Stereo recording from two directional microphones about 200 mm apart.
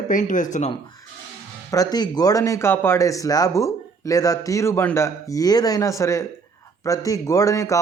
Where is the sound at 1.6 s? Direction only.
20° left (ahead or behind).